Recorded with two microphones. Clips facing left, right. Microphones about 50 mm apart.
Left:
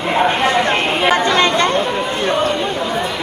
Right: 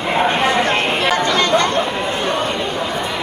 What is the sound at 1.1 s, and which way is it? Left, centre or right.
Chatter, left.